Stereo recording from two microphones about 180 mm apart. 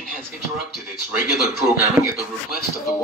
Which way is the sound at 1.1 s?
10° right (ahead or behind).